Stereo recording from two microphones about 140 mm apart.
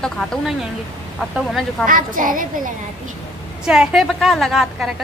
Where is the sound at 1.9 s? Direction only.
75° right (ahead or behind).